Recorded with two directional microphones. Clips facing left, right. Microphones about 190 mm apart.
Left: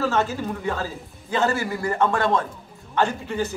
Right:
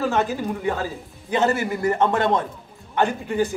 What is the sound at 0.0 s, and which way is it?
A man's voice, 15° right (ahead or behind).